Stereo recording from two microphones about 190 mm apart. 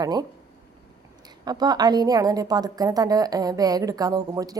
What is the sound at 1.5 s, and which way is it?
A woman's voice, 20° right (ahead or behind).